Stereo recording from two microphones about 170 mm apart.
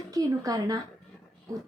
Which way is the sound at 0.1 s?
20° right (ahead or behind).